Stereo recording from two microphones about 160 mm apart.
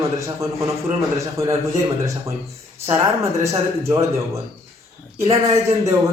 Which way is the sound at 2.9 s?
20° right (ahead or behind).